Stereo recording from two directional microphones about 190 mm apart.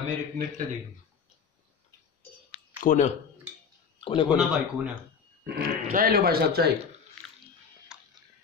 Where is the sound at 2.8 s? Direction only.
40° left (ahead or behind).